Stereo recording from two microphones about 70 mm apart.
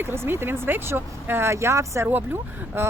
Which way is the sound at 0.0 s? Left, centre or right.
Right.